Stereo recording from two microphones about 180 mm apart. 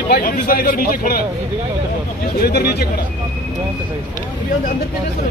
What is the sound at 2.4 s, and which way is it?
Speech, 60° left (ahead or behind).